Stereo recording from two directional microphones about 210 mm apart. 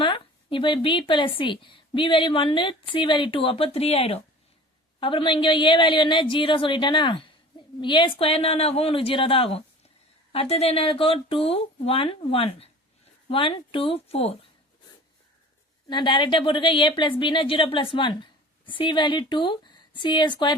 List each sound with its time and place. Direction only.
0.0 s a woman's voice: 25° left (ahead or behind)
15.9 s a woman's voice: 20° left (ahead or behind)